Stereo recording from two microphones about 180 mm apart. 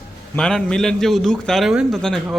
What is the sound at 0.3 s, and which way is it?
A man's voice, 5° left (ahead or behind).